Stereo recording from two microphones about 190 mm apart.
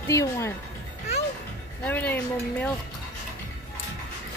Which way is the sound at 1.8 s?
10° left (ahead or behind).